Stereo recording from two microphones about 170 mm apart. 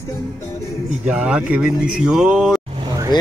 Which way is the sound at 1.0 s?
5° right (ahead or behind).